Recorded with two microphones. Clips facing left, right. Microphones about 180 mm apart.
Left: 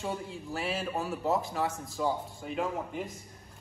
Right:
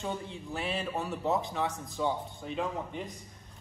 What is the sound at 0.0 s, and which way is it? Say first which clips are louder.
A man's voice: left 1 dB; centre (ahead or behind).